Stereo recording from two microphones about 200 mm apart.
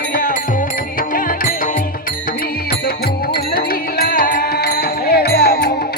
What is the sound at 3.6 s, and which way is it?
Music, 50° left (ahead or behind).